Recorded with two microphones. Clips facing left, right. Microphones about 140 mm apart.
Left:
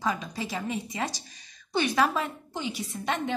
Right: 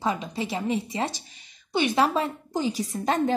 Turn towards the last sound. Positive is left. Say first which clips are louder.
# right 6 dB
turn(degrees=-40)  # may be behind; listen again after turning